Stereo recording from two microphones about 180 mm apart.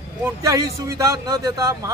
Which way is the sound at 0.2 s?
15° right (ahead or behind).